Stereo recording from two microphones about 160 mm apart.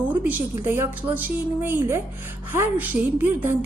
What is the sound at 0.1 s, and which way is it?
A woman's voice, 10° right (ahead or behind).